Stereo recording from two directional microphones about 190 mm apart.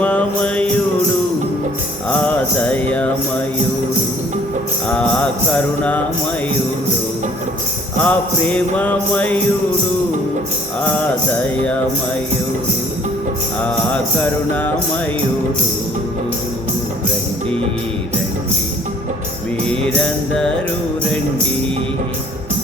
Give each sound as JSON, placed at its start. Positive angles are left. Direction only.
{"t": 0.0, "sound": "music", "side_deg": 5}
{"t": 2.0, "sound": "mantra", "side_deg": 5}
{"t": 4.9, "sound": "music", "side_deg": 5}
{"t": 8.0, "sound": "jingle bell", "side_deg": 5}
{"t": 10.9, "sound": "jingle bell", "side_deg": 10}
{"t": 13.6, "sound": "jingle bell", "side_deg": 5}
{"t": 19.6, "sound": "music", "side_deg": 5}